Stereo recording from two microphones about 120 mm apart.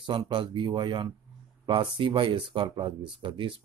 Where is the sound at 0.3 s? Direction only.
40° right (ahead or behind).